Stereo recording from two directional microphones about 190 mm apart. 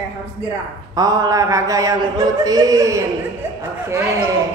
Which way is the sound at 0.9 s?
20° right (ahead or behind).